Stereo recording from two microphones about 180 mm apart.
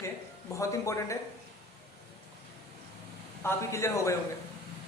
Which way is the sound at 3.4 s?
15° left (ahead or behind).